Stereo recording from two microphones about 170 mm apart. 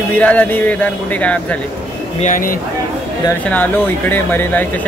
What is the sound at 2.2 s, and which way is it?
Speech, 50° left (ahead or behind).